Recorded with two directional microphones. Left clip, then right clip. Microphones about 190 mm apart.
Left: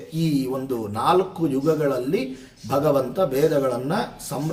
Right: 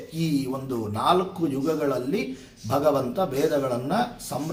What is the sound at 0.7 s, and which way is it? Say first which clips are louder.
A man's voice: left 2 dB; 15° left (ahead or behind).